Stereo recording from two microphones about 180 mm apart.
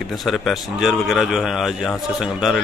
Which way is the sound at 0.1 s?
Centre (ahead or behind).